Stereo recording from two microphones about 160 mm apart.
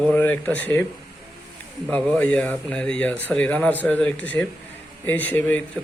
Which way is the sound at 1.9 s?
10° left (ahead or behind).